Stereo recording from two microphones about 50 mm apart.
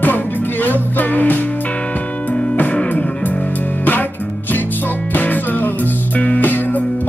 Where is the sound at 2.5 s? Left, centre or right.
Left.